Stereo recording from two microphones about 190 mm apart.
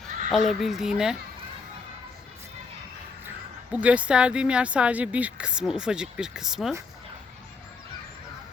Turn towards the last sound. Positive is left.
turn(degrees=0)  # may be behind; listen again after turning